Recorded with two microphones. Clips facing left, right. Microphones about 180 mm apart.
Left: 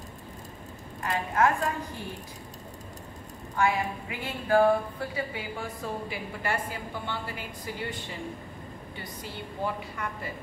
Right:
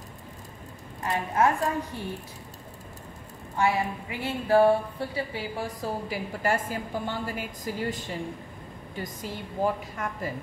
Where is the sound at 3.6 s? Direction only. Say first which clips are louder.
Right 1 dB; 30° right (ahead or behind).